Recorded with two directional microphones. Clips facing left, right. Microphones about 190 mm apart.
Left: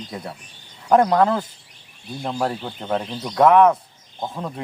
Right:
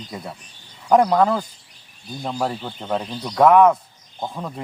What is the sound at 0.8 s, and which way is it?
Speech, centre (ahead or behind).